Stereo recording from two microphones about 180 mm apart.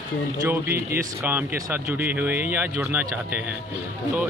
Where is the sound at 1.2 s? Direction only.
10° right (ahead or behind).